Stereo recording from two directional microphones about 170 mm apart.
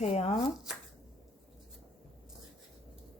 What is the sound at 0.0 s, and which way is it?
Speech, 40° left (ahead or behind).